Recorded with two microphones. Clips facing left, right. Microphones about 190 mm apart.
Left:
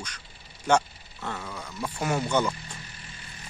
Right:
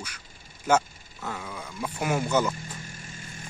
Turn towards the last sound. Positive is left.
turn(degrees=-45)  # may be behind; listen again after turning